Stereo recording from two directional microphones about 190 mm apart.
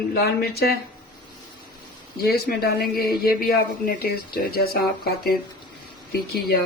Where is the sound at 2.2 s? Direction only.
55° left (ahead or behind).